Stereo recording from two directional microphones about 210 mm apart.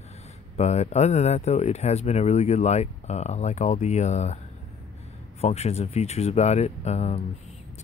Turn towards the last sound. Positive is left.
turn(degrees=30)  # may be behind; listen again after turning